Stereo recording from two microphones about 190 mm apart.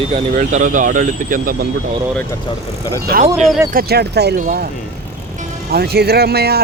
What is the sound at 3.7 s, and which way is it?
Speech, 55° right (ahead or behind).